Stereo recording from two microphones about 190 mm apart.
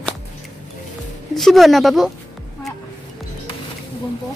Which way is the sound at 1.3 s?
Centre (ahead or behind).